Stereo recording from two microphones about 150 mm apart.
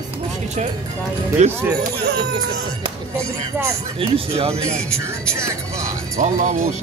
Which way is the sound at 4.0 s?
40° right (ahead or behind).